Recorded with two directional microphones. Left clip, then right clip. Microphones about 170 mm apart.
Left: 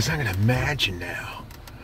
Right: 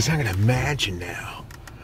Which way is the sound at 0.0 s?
20° right (ahead or behind).